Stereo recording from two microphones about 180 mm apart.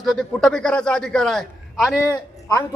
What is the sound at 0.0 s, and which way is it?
A man's voice, centre (ahead or behind).